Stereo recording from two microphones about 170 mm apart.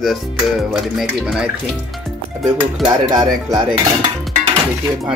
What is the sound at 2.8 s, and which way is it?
Speech, 25° right (ahead or behind).